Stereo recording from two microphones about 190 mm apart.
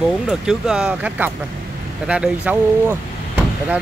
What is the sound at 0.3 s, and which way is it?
Speech, 5° right (ahead or behind).